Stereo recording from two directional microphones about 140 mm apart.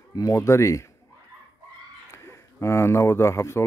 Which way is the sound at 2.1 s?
20° left (ahead or behind).